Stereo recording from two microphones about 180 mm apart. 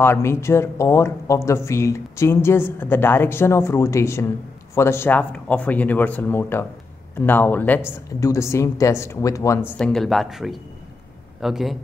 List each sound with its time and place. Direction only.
0.0 s speech: 15° left (ahead or behind)
9.7 s speech: 5° left (ahead or behind)